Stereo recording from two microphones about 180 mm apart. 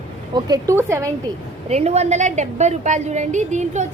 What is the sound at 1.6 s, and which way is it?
A woman's voice, 35° right (ahead or behind).